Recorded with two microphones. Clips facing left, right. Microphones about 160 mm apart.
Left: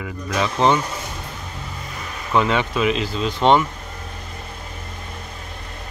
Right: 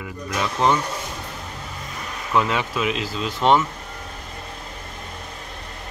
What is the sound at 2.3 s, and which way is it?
A man's voice, centre (ahead or behind).